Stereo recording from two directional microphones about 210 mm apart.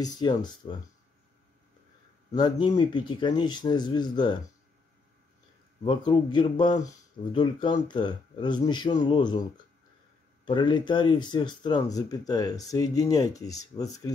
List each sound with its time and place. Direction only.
0.0 s speech: 20° left (ahead or behind)
2.3 s speech: 20° left (ahead or behind)
5.9 s speech: 20° left (ahead or behind)
10.4 s speech: 20° left (ahead or behind)